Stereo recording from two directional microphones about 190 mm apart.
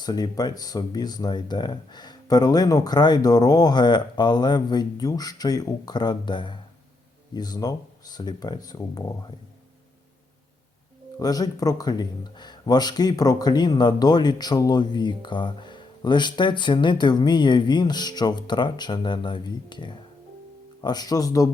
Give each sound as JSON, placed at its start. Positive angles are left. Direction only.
{"t": 0.0, "sound": "speech", "side_deg": 20}
{"t": 11.2, "sound": "speech", "side_deg": 20}